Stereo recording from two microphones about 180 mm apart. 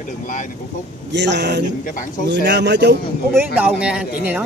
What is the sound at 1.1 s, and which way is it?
Speech, 75° right (ahead or behind).